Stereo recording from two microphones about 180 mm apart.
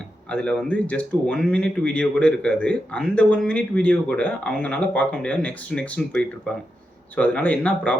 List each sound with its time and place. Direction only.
0.3 s speech: 5° left (ahead or behind)